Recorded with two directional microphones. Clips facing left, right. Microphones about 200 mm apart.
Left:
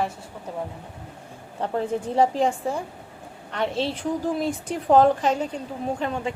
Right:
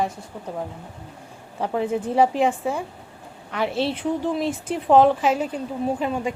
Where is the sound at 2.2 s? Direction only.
5° right (ahead or behind).